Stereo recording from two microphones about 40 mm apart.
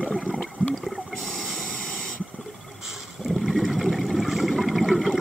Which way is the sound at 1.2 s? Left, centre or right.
Centre.